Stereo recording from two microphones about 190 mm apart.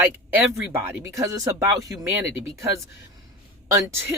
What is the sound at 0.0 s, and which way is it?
Speech, 10° right (ahead or behind).